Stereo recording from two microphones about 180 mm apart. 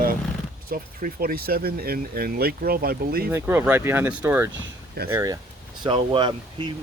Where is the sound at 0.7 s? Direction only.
55° right (ahead or behind).